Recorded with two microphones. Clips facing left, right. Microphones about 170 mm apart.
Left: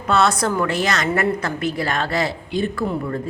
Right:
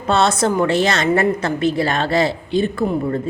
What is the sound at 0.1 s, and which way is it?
A woman's voice, 25° right (ahead or behind).